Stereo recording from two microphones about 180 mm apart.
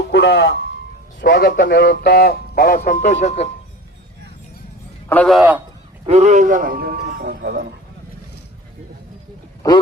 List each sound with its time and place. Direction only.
0.1 s a sound: 75° left (ahead or behind)
1.2 s speech: 65° left (ahead or behind); by 3.5 s 40° left (ahead or behind)
5.0 s a man's voice: 5° left (ahead or behind)
6.1 s a man's voice: 40° right (ahead or behind); by 7.7 s 65° right (ahead or behind)